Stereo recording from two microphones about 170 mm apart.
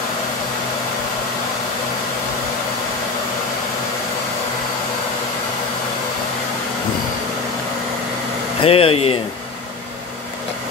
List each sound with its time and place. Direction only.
8.5 s speech: 35° left (ahead or behind)